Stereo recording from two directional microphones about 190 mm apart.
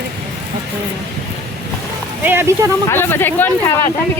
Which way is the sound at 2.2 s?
10° right (ahead or behind).